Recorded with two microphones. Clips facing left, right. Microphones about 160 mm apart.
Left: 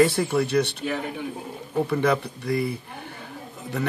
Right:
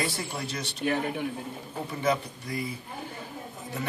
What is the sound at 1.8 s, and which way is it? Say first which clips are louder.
Speech: left 3 dB; 70° left (ahead or behind).